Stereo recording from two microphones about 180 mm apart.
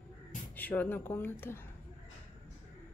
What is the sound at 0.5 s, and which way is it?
Speech, 10° left (ahead or behind).